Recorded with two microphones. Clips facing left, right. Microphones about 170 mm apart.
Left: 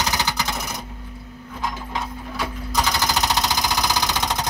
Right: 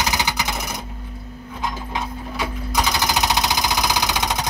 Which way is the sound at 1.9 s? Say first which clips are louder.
Right 2 dB; 15° right (ahead or behind).